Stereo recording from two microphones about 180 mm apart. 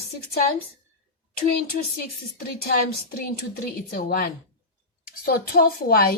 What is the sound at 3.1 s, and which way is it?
A woman's voice, 55° left (ahead or behind).